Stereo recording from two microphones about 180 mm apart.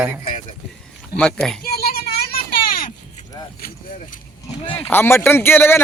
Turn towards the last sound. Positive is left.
turn(degrees=10)  # may be behind; listen again after turning